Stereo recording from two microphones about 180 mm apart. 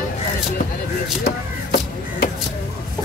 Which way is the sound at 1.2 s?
60° left (ahead or behind).